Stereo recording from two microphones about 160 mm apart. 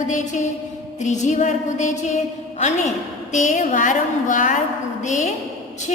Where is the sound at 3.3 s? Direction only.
50° left (ahead or behind).